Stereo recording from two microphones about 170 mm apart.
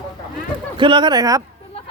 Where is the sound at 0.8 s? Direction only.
30° right (ahead or behind).